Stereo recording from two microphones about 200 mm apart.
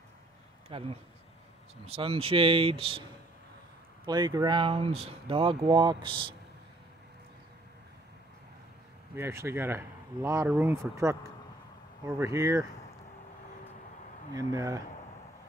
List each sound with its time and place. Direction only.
0.7 s speech: 30° right (ahead or behind)
4.0 s speech: 20° right (ahead or behind)
9.1 s speech: 15° right (ahead or behind)
12.2 s speech: 15° right (ahead or behind)
14.3 s speech: 15° right (ahead or behind)